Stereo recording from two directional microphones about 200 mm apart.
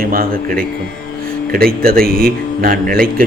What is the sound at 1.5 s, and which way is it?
A man's voice, 45° right (ahead or behind).